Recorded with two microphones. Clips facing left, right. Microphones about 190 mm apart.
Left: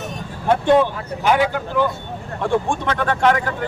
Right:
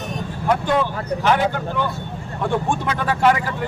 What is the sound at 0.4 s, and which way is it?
Speech, 25° left (ahead or behind).